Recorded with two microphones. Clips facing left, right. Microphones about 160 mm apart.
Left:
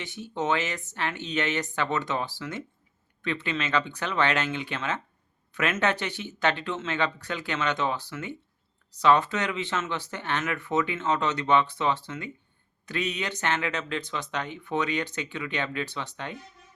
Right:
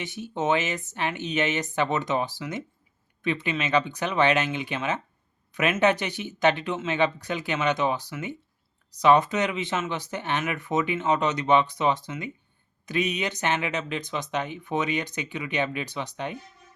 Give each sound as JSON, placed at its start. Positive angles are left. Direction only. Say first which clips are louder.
{"t": 0.0, "sound": "speech", "louder": "right 2 dB", "side_deg": -20}